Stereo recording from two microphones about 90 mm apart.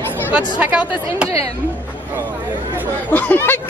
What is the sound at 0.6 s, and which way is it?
Speech, 15° right (ahead or behind).